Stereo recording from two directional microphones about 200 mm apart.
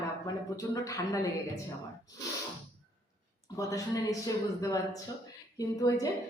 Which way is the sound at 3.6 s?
15° left (ahead or behind).